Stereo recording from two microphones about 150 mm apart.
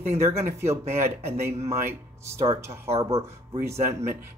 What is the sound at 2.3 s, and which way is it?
Speech, 20° right (ahead or behind).